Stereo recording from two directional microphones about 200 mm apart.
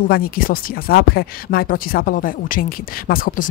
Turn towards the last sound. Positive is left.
turn(degrees=45)  # may be behind; listen again after turning